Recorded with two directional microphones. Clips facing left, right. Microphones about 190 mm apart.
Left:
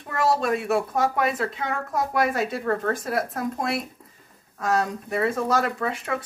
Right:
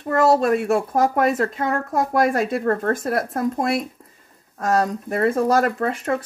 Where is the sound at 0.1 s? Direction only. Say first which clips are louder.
Right 6 dB; 45° right (ahead or behind).